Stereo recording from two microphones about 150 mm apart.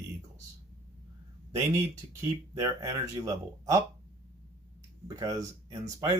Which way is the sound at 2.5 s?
25° right (ahead or behind).